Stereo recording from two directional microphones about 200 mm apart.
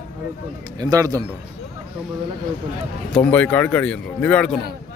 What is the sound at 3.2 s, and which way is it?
Speech, 5° left (ahead or behind).